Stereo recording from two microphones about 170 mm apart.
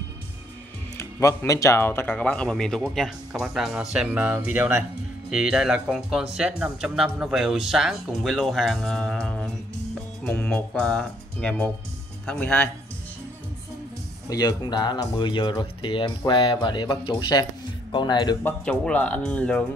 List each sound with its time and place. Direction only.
0.9 s speech: 20° left (ahead or behind)
14.3 s speech: 25° left (ahead or behind)
18.4 s speech: 10° left (ahead or behind)